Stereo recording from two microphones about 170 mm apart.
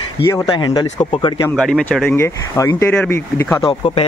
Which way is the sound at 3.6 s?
30° left (ahead or behind).